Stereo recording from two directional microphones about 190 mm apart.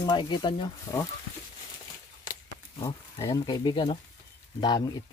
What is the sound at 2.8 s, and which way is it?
Speech, 20° left (ahead or behind).